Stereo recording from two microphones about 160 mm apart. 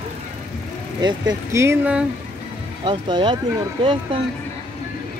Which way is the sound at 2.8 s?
30° right (ahead or behind).